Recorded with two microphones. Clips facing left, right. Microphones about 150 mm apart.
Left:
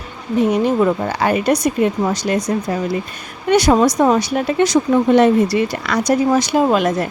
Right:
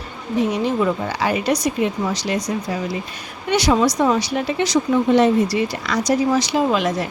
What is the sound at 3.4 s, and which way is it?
Speech, 50° left (ahead or behind).